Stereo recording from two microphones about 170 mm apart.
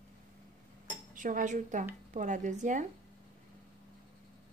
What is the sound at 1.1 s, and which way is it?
Cutlery, 50° right (ahead or behind).